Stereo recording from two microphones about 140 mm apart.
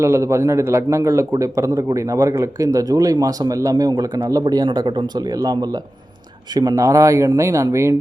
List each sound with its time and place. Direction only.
0.0 s a man's voice: 20° right (ahead or behind)